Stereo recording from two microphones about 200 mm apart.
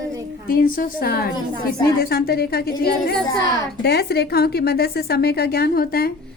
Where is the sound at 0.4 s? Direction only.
45° left (ahead or behind).